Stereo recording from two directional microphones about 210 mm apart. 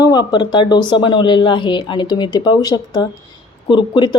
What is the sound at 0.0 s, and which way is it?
A woman's voice, 20° left (ahead or behind).